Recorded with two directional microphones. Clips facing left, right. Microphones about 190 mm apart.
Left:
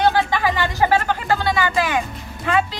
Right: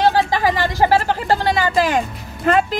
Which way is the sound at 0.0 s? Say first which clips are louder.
Right 2 dB; 35° right (ahead or behind).